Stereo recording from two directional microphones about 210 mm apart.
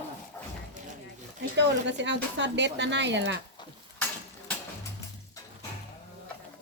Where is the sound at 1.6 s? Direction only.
55° right (ahead or behind).